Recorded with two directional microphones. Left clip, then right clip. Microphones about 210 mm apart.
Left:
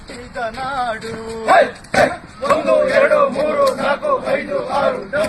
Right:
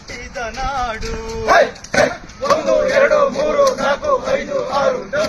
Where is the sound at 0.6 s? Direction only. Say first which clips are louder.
Right 1 dB; 20° right (ahead or behind).